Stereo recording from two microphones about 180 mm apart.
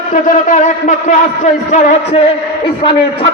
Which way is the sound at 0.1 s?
45° left (ahead or behind).